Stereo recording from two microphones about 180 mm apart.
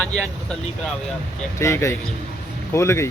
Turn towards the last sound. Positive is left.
turn(degrees=15)  # may be behind; listen again after turning